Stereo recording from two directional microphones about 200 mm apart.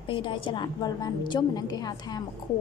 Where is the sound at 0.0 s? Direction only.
25° left (ahead or behind).